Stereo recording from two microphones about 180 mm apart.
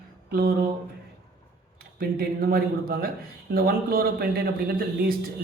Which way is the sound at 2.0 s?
55° right (ahead or behind).